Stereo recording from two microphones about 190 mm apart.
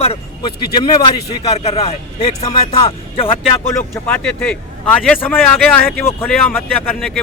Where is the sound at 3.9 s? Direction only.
10° left (ahead or behind).